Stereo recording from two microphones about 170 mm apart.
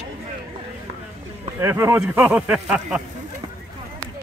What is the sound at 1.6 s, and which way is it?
Speech, 15° right (ahead or behind).